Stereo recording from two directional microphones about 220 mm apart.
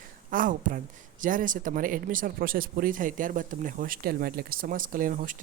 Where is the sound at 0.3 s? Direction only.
40° right (ahead or behind).